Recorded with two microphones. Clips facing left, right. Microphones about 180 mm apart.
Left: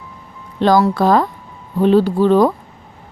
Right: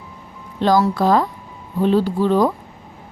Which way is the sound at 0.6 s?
65° left (ahead or behind).